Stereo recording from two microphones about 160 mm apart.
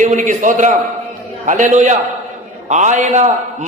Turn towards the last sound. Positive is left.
turn(degrees=-45)  # may be behind; listen again after turning